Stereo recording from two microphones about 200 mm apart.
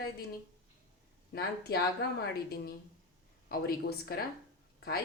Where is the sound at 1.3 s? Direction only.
55° left (ahead or behind).